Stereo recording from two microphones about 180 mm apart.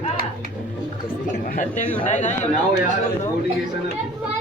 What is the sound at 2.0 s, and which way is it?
Speech, 40° left (ahead or behind).